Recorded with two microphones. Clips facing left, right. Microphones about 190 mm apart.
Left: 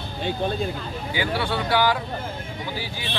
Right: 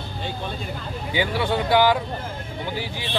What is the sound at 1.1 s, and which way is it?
Speech, 20° right (ahead or behind).